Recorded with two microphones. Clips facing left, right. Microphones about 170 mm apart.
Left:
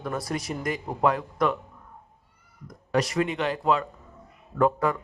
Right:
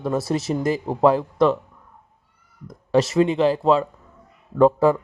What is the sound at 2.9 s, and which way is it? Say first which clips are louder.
A man's voice: right 7 dB; 25° right (ahead or behind).